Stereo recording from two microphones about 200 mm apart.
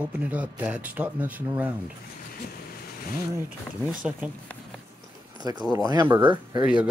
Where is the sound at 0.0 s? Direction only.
5° right (ahead or behind).